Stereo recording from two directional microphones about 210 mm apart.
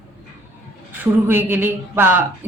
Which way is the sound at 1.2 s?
10° right (ahead or behind).